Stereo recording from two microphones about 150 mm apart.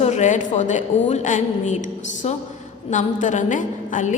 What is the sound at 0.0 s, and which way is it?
A woman's voice, 50° left (ahead or behind).